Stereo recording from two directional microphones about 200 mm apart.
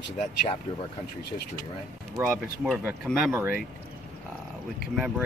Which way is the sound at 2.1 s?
10° right (ahead or behind).